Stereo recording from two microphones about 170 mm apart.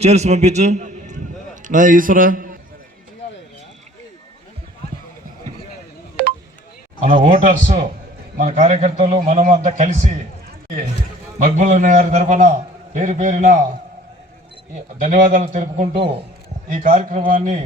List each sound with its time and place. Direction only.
0.0 s a man's voice: 40° right (ahead or behind); by 2.6 s 55° right (ahead or behind)
6.2 s a sound: 70° right (ahead or behind)
7.0 s a man's voice: 45° right (ahead or behind)
11.3 s a man's voice: 45° right (ahead or behind)
15.0 s a man's voice: 45° right (ahead or behind)